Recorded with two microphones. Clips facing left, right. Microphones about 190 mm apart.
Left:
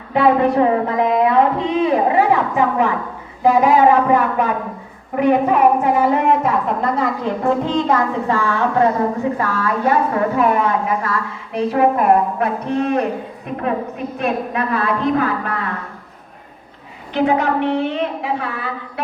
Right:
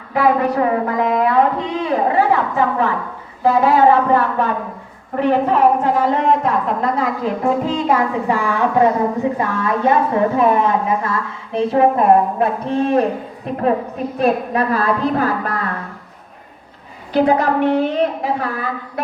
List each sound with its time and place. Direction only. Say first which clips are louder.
0.1 s a sound: left 2 dB; 25° left (ahead or behind)
3.4 s a woman's voice: even; 15° left (ahead or behind); by 15.5 s 35° right (ahead or behind)
17.1 s a woman's voice: right 2 dB; 35° right (ahead or behind)